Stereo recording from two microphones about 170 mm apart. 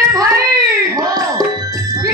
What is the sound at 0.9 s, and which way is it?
Music, 20° right (ahead or behind).